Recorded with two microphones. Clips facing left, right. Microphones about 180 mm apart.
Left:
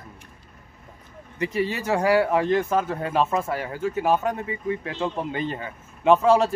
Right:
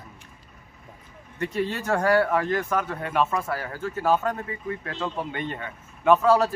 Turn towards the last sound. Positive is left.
turn(degrees=25)  # may be behind; listen again after turning